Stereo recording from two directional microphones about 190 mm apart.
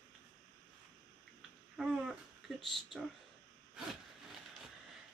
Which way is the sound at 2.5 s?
Centre (ahead or behind).